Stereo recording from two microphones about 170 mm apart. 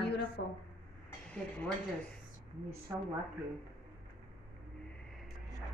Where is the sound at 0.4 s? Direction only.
90° left.